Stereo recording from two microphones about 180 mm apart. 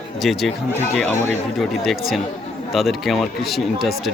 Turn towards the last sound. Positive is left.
turn(degrees=0)  # may be behind; listen again after turning